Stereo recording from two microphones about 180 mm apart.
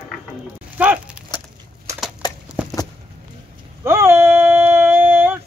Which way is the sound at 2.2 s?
20° left (ahead or behind).